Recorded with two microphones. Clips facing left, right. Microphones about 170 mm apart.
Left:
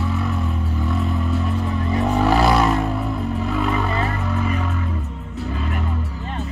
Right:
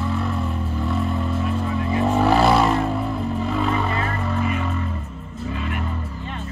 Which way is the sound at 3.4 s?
Centre (ahead or behind).